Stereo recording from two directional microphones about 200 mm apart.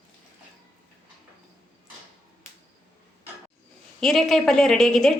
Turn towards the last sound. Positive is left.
turn(degrees=0)  # may be behind; listen again after turning